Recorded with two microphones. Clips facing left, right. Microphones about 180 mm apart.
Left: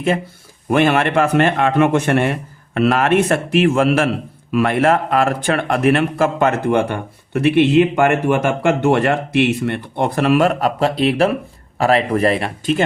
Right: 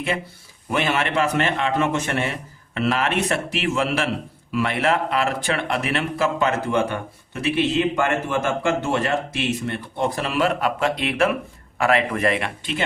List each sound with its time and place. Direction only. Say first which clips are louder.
0.7 s speech: left 8 dB; 55° left (ahead or behind)